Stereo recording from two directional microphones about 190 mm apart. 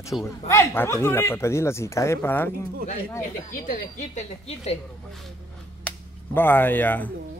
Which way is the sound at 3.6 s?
45° left (ahead or behind).